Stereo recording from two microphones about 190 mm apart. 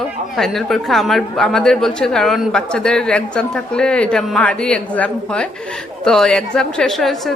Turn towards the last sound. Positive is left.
turn(degrees=0)  # may be behind; listen again after turning